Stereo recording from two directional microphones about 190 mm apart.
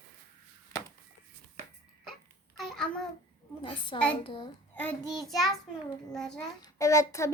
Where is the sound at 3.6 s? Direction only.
25° left (ahead or behind).